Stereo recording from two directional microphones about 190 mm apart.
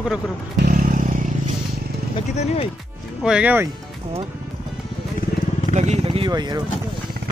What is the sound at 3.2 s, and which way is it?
Speech, 5° right (ahead or behind).